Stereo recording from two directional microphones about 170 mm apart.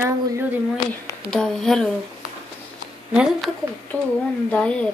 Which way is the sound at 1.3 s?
5° left (ahead or behind).